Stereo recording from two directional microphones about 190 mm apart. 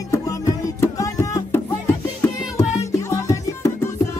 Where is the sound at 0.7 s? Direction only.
15° left (ahead or behind).